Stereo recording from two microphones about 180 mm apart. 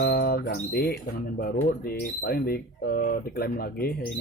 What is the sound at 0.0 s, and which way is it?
Speech, 55° left (ahead or behind).